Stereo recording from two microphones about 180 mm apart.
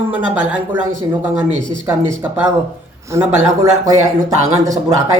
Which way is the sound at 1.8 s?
10° right (ahead or behind).